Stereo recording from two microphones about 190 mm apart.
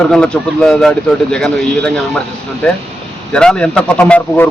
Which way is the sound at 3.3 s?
5° left (ahead or behind).